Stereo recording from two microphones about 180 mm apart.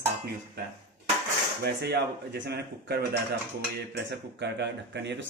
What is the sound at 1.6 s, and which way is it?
Speech, 65° right (ahead or behind).